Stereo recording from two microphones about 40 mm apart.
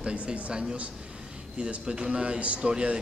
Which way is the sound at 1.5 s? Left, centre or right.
Right.